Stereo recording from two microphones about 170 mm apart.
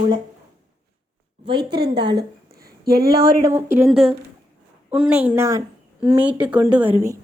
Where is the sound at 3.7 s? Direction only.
10° right (ahead or behind).